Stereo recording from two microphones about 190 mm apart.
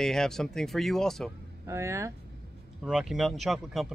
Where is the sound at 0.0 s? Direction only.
5° left (ahead or behind).